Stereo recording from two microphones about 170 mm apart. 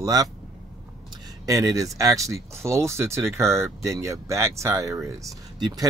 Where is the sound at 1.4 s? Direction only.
20° right (ahead or behind).